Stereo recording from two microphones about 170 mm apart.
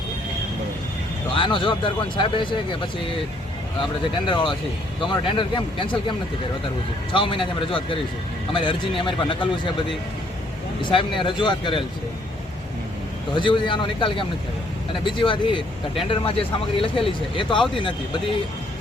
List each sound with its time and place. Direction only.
1.3 s speech: 30° left (ahead or behind)
4.3 s speech: 30° left (ahead or behind)
7.1 s speech: 30° left (ahead or behind)
13.3 s speech: 30° left (ahead or behind)